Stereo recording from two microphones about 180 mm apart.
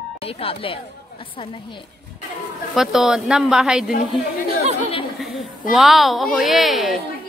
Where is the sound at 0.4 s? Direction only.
30° left (ahead or behind).